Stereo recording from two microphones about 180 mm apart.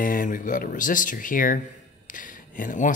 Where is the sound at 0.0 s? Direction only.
50° left (ahead or behind).